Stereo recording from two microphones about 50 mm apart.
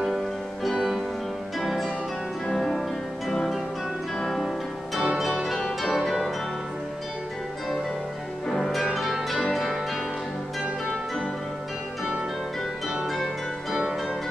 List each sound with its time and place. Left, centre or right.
0.7 s music: centre
1.6 s harp: centre
2.4 s music: centre
3.3 s music: centre
8.5 s music: centre
13.0 s music: centre